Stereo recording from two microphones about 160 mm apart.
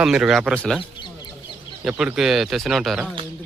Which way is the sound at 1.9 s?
5° right (ahead or behind).